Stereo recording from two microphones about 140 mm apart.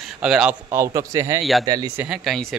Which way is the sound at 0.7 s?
20° right (ahead or behind).